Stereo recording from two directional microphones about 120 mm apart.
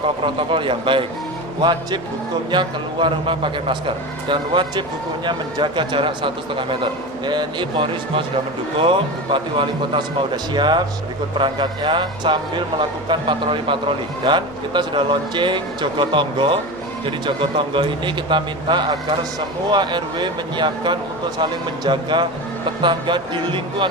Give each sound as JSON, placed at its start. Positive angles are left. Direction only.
{"t": 0.2, "sound": "a man's voice", "side_deg": -45}